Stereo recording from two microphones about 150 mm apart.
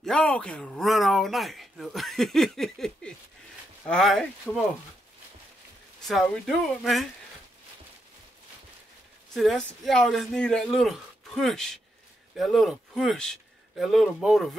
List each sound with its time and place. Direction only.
0.0 s speech: 5° left (ahead or behind)
6.0 s speech: centre (ahead or behind)
9.3 s a man's voice: centre (ahead or behind)